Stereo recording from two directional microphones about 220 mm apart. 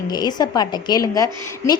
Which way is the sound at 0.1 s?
20° left (ahead or behind).